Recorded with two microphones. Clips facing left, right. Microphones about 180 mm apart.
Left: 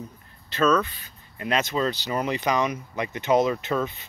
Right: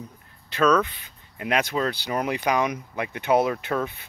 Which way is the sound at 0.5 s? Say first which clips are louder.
Right 1 dB; 10° right (ahead or behind).